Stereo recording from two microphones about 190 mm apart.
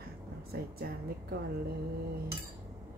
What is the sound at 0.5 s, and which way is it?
Speech, 55° right (ahead or behind).